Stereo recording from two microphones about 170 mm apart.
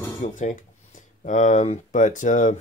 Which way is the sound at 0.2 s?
50° left (ahead or behind).